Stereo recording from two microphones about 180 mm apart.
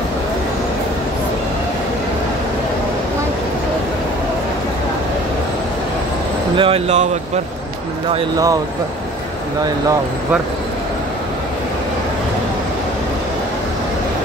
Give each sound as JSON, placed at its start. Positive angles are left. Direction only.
{"t": 6.5, "sound": "speech", "side_deg": -30}